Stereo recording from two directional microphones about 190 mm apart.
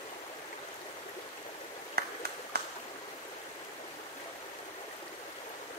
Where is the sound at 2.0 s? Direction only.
50° right (ahead or behind).